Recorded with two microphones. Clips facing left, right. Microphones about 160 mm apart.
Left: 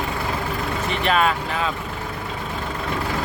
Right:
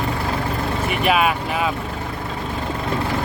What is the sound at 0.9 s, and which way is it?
Speech, 10° right (ahead or behind).